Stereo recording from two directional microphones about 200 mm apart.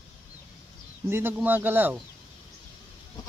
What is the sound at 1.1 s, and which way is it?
Speech, 10° right (ahead or behind).